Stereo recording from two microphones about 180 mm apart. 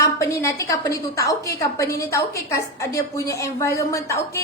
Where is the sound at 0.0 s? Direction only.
15° left (ahead or behind).